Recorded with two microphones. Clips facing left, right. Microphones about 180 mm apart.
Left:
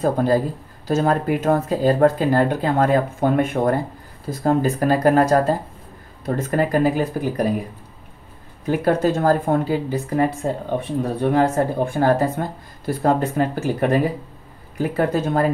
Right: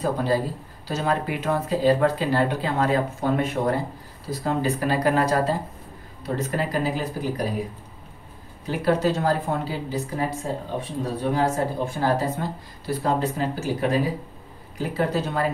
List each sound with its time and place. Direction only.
0.0 s speech: 50° left (ahead or behind)
8.6 s speech: 50° left (ahead or behind)